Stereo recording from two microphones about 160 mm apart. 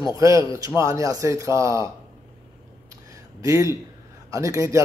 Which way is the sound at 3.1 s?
20° right (ahead or behind).